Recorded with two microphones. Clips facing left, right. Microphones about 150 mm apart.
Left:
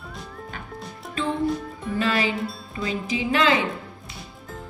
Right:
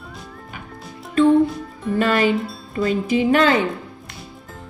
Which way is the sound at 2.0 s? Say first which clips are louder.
Right 6 dB; 50° right (ahead or behind).